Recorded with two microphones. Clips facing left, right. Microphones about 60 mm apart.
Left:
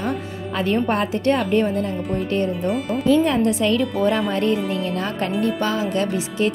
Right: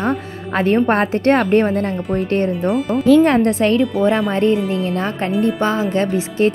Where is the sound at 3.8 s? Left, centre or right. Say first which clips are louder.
Right 4 dB; centre.